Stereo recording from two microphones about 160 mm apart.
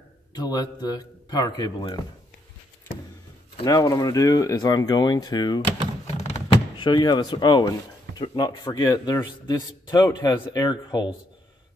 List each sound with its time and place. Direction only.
0.3 s a man's voice: 25° left (ahead or behind)
3.5 s a man's voice: 25° left (ahead or behind)
6.1 s door: 30° left (ahead or behind)
8.2 s a man's voice: 25° left (ahead or behind)